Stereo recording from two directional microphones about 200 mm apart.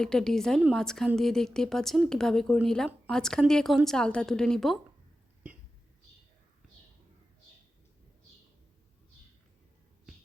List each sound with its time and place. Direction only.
0.0 s speech: 5° left (ahead or behind)